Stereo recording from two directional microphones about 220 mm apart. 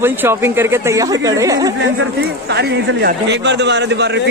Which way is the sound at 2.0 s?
50° right (ahead or behind).